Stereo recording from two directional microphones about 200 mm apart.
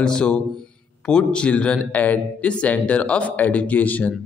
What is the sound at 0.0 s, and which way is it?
A man's voice, 5° left (ahead or behind).